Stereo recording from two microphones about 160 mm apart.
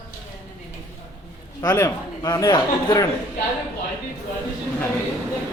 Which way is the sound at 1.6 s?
25° left (ahead or behind).